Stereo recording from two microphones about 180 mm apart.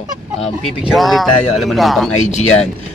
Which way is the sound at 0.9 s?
Centre (ahead or behind).